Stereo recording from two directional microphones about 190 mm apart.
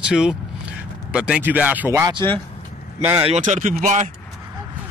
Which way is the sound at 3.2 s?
35° right (ahead or behind).